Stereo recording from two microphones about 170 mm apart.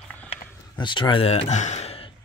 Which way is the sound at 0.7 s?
25° left (ahead or behind).